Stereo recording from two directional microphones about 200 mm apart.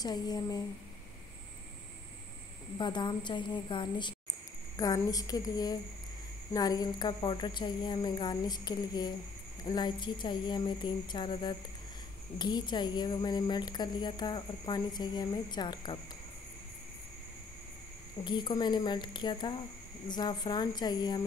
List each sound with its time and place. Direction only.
0.0 s speech: 20° left (ahead or behind)
2.8 s a woman's voice: 20° left (ahead or behind)
18.2 s speech: 20° left (ahead or behind)